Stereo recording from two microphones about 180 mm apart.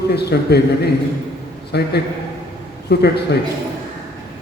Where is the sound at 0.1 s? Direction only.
65° left (ahead or behind).